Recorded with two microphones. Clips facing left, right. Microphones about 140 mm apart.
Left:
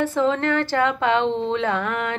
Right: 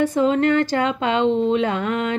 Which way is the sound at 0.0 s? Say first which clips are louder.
Right 3 dB; 15° right (ahead or behind).